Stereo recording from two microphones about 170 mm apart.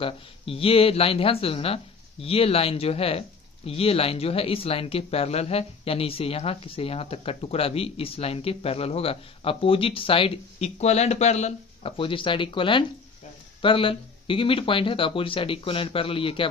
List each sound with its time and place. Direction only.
0.0 s speech: 35° left (ahead or behind)